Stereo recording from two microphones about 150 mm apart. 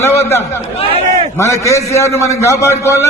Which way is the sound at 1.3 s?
20° left (ahead or behind).